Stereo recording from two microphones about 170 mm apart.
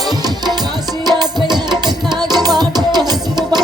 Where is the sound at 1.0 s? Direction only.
25° right (ahead or behind).